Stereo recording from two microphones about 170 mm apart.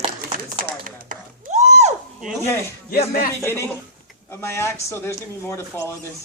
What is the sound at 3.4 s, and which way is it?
A man's voice, 15° left (ahead or behind).